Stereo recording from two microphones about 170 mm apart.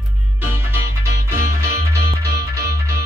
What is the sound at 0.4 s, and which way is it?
Music, 10° right (ahead or behind).